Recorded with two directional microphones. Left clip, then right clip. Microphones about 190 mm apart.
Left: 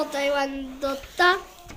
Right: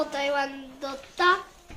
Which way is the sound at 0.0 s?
10° left (ahead or behind).